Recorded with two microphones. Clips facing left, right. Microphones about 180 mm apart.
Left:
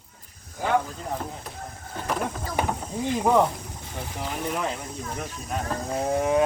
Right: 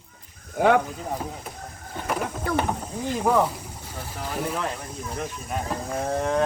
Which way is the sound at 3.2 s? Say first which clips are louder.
Left 1 dB; centre (ahead or behind).